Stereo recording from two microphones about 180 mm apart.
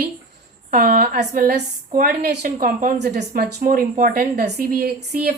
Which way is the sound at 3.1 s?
60° right (ahead or behind).